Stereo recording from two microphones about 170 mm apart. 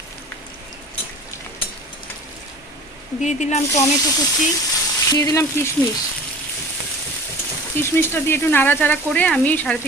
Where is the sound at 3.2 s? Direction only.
45° left (ahead or behind).